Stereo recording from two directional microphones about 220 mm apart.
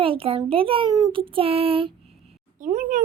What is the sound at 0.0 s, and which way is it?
A child's voice, 25° right (ahead or behind).